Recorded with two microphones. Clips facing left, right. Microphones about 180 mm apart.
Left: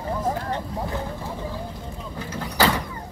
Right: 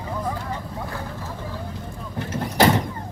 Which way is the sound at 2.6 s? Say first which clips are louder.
Right 4 dB; 25° right (ahead or behind).